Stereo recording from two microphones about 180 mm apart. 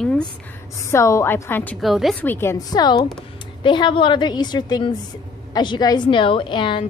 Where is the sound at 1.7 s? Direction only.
Centre (ahead or behind).